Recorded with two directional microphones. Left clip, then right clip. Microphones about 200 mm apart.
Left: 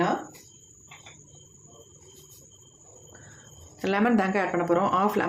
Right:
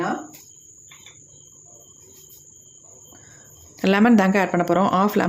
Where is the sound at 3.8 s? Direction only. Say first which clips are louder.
Right 6 dB; 40° right (ahead or behind).